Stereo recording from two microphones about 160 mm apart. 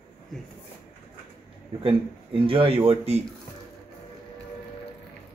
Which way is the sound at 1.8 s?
35° right (ahead or behind).